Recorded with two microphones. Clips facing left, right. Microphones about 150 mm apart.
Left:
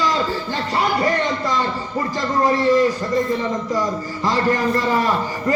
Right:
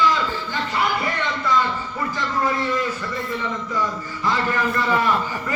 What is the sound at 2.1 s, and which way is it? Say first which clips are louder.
A man's voice: left 5 dB; 40° left (ahead or behind).